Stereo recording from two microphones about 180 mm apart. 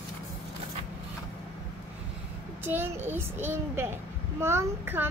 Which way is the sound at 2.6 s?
10° right (ahead or behind).